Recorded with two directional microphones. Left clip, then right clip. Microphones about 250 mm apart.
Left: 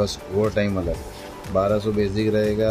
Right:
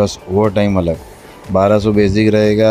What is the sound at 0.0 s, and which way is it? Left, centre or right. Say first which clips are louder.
Speech: right 8 dB; right.